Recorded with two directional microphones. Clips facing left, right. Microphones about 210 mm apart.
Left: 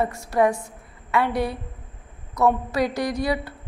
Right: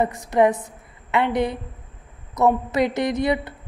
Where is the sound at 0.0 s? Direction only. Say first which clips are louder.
Right 2 dB; 20° right (ahead or behind).